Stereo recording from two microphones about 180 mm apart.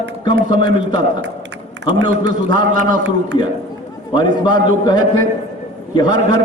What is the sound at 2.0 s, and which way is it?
Speech, 25° left (ahead or behind).